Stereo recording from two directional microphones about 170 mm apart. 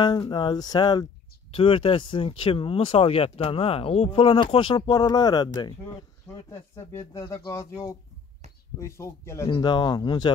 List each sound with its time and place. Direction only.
0.0 s speech: 25° left (ahead or behind)
9.5 s speech: 25° left (ahead or behind)